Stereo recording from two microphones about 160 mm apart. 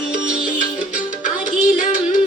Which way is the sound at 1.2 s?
55° left (ahead or behind).